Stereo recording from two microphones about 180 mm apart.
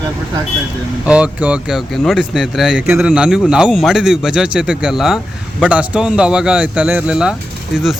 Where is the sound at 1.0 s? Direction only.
5° right (ahead or behind).